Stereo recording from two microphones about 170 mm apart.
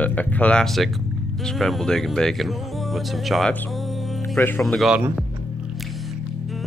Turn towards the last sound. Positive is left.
turn(degrees=0)  # may be behind; listen again after turning